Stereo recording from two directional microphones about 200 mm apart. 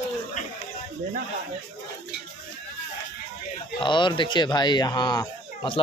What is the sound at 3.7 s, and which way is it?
Speech, 25° left (ahead or behind).